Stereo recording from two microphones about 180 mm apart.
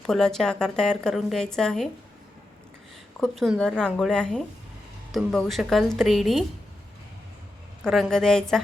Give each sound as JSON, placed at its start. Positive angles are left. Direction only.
{"t": 0.0, "sound": "a woman's voice", "side_deg": 5}
{"t": 3.2, "sound": "a woman's voice", "side_deg": 0}
{"t": 7.9, "sound": "a woman's voice", "side_deg": 0}